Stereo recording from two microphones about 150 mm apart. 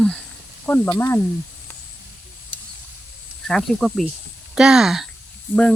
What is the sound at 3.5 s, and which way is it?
Speech, 5° left (ahead or behind).